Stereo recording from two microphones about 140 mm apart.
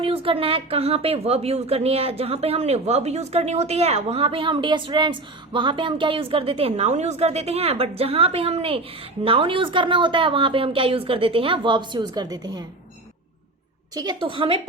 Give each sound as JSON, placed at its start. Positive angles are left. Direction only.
{"t": 0.0, "sound": "a woman's voice", "side_deg": -40}
{"t": 13.9, "sound": "a woman's voice", "side_deg": -30}